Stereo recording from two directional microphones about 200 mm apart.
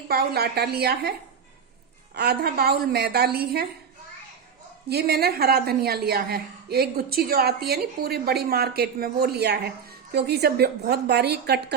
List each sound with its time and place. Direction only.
0.1 s a woman's voice: 55° right (ahead or behind)
2.1 s a woman's voice: 50° right (ahead or behind)
4.9 s a woman's voice: 55° right (ahead or behind)